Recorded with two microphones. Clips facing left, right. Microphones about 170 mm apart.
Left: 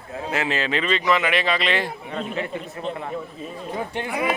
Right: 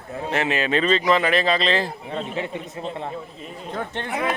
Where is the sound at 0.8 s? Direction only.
40° right (ahead or behind).